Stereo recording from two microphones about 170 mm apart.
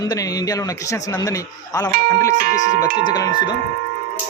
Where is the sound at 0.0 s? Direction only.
20° left (ahead or behind).